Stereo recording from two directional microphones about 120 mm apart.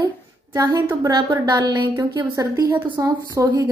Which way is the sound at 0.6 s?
30° right (ahead or behind).